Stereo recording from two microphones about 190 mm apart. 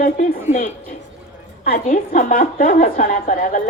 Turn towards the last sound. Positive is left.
turn(degrees=45)  # may be behind; listen again after turning